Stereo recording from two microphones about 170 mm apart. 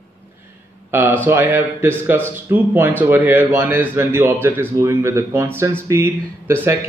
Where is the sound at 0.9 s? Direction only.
10° right (ahead or behind).